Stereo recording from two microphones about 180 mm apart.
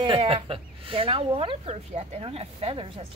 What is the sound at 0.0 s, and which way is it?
Speech, 30° right (ahead or behind).